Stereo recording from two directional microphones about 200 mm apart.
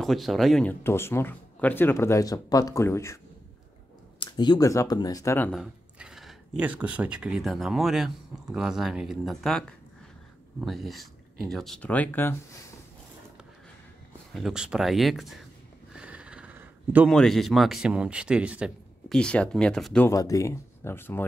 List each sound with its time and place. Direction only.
0.0 s speech: centre (ahead or behind)
4.2 s speech: 20° left (ahead or behind)
5.5 s speech: 5° right (ahead or behind)
14.3 s speech: 5° right (ahead or behind)
15.9 s a sound: 5° right (ahead or behind)
17.1 s speech: centre (ahead or behind)